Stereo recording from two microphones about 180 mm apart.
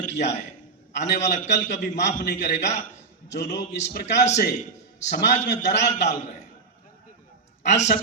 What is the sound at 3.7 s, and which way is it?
A man's voice, 70° left (ahead or behind).